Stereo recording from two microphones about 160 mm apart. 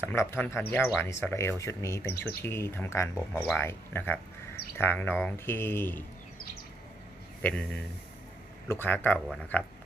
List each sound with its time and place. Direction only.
0.0 s speech: 15° left (ahead or behind)
7.4 s speech: 5° left (ahead or behind)